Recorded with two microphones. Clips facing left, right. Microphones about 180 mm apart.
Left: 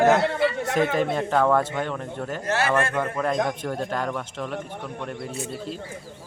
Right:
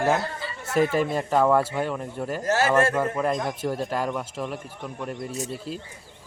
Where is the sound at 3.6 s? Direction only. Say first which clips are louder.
Right 1 dB; 5° right (ahead or behind).